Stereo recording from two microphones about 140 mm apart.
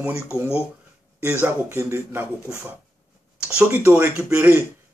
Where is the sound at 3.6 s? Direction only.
15° right (ahead or behind).